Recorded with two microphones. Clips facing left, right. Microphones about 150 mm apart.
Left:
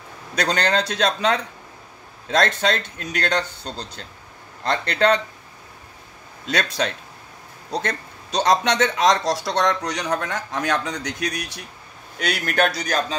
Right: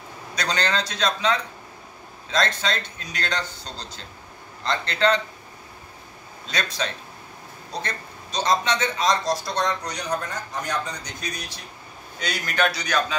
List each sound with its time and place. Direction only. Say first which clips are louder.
0.4 s speech: left 4 dB; 55° left (ahead or behind)
4.6 s speech: left 3 dB; 55° left (ahead or behind)
6.5 s a man's voice: left 5 dB; 65° left (ahead or behind); by 13.0 s 45° left (ahead or behind)